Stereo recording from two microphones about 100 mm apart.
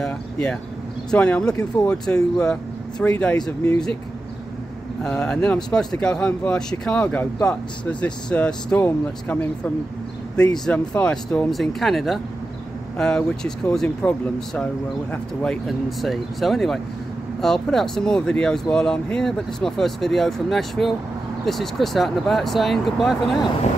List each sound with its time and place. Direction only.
0.0 s a sound: 10° left (ahead or behind)
1.1 s speech: 10° left (ahead or behind)
5.0 s speech: 10° left (ahead or behind)
11.0 s speech: 10° left (ahead or behind)
11.5 s speech: centre (ahead or behind)
15.6 s speech: centre (ahead or behind)